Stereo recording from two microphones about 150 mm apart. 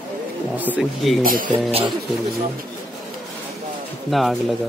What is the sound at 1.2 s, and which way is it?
Speech, 70° right (ahead or behind).